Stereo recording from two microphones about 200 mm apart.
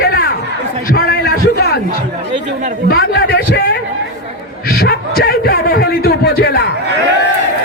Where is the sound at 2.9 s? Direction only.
50° left (ahead or behind).